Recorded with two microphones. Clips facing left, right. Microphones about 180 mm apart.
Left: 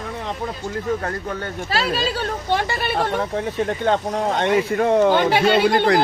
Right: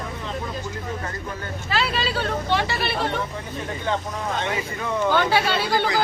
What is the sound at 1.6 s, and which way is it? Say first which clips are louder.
Speech: left 2 dB; 40° left (ahead or behind).